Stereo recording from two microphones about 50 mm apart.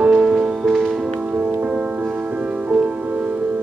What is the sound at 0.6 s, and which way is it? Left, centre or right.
Music, centre.